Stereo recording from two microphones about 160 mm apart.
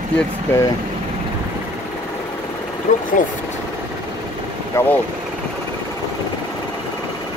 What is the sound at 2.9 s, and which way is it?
Speech, 50° left (ahead or behind).